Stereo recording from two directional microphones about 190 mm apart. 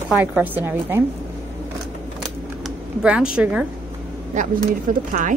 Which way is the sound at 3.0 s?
5° right (ahead or behind).